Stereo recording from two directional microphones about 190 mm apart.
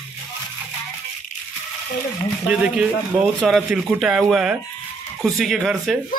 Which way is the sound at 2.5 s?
5° right (ahead or behind).